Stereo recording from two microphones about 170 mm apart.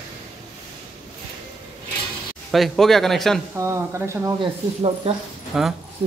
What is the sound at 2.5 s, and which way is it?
Speech, centre (ahead or behind).